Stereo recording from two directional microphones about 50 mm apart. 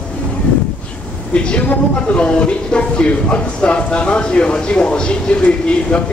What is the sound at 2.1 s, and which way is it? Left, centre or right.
Speech, left.